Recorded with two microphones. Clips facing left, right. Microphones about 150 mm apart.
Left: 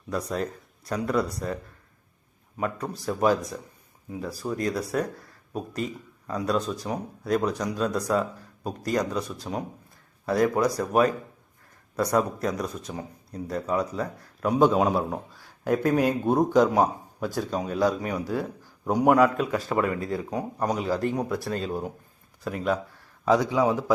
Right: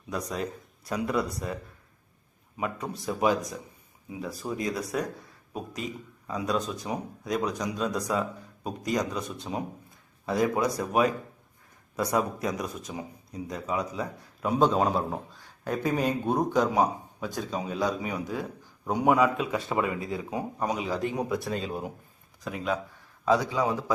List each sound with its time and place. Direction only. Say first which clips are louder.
0.1 s speech: left 3 dB; centre (ahead or behind)
2.6 s speech: left 3 dB; 5° right (ahead or behind)
12.1 s speech: left 3 dB; 5° right (ahead or behind)
23.2 s a man's voice: left 3 dB; 15° left (ahead or behind)